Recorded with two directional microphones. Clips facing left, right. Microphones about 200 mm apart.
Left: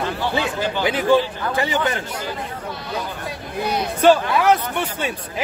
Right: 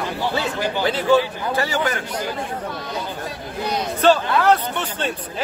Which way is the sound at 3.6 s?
10° left (ahead or behind).